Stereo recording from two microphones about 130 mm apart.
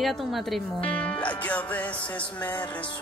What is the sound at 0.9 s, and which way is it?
Music, 10° left (ahead or behind).